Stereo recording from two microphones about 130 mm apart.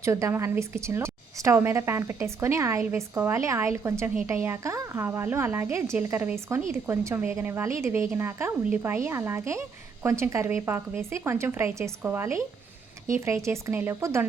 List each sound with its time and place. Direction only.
0.0 s a woman's voice: 20° right (ahead or behind)